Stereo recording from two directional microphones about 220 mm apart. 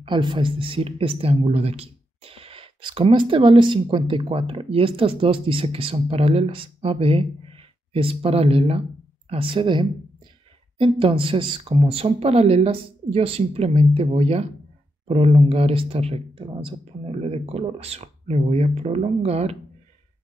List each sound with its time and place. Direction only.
0.0 s a woman's voice: 20° right (ahead or behind)